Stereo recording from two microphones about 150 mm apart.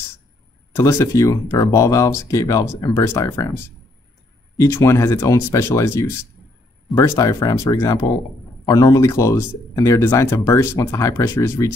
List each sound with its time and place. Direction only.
0.7 s speech: 15° left (ahead or behind)
4.6 s speech: 20° left (ahead or behind)